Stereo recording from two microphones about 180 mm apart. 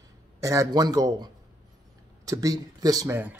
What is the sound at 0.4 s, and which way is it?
A man's voice, 20° right (ahead or behind).